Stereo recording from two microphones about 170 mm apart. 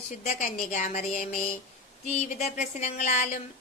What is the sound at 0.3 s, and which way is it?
A woman's voice, 45° left (ahead or behind).